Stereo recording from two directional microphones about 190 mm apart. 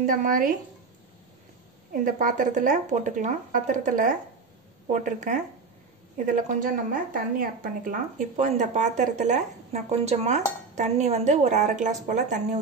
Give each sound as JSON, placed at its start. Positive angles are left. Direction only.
{"t": 0.0, "sound": "speech", "side_deg": -45}
{"t": 2.0, "sound": "a woman's voice", "side_deg": -45}